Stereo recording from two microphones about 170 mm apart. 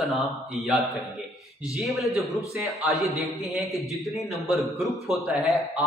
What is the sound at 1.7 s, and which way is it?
A man's voice, centre (ahead or behind).